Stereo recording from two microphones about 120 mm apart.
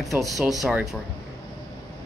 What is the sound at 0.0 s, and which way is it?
Speech, centre (ahead or behind).